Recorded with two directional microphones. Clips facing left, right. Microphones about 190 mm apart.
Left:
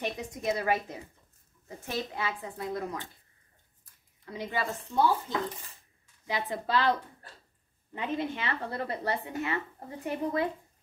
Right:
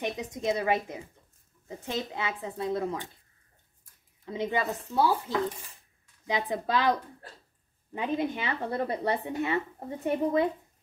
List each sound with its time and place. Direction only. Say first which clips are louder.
0.0 s a woman's voice: right 2 dB; 20° right (ahead or behind)
4.3 s a woman's voice: right 4 dB; 20° right (ahead or behind)
6.2 s a woman's voice: right 3 dB; 15° right (ahead or behind)